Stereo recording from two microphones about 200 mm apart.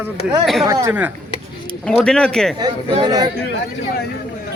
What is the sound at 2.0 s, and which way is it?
Speech, 5° left (ahead or behind).